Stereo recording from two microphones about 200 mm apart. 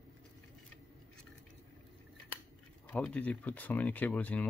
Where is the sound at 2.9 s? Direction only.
5° left (ahead or behind).